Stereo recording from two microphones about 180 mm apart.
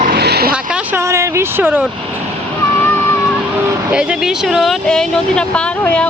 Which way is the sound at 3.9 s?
5° right (ahead or behind).